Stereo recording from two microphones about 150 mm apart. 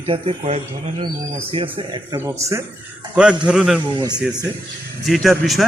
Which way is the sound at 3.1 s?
5° right (ahead or behind).